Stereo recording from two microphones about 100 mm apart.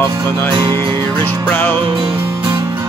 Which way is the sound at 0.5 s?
55° right (ahead or behind).